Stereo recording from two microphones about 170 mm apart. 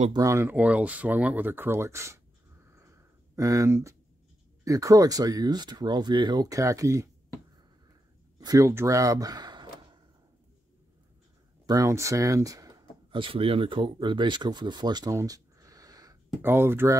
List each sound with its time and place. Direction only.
0.1 s speech: 20° right (ahead or behind)
2.6 s a sound: 15° right (ahead or behind)
4.6 s speech: 20° right (ahead or behind)
8.4 s speech: 20° right (ahead or behind)
11.6 s speech: 20° right (ahead or behind)